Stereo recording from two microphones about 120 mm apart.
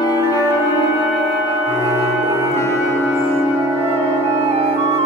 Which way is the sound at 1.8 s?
25° left (ahead or behind).